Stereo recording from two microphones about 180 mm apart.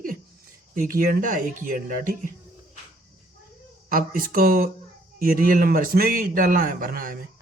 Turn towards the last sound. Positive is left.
turn(degrees=-50)  # may be behind; listen again after turning